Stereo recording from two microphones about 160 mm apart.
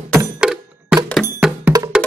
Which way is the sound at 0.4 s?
5° right (ahead or behind).